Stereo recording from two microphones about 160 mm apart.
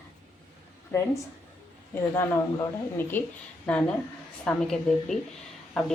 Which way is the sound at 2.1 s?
15° left (ahead or behind).